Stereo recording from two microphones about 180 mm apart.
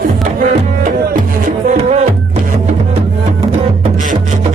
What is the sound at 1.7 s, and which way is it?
Music, 40° right (ahead or behind).